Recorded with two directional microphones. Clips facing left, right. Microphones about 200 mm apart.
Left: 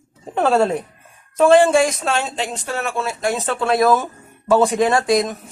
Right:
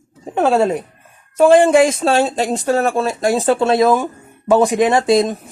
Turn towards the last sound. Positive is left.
turn(degrees=-30)  # may be behind; listen again after turning